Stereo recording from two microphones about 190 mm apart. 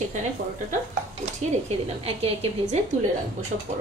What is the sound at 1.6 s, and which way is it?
A woman's voice, 30° right (ahead or behind).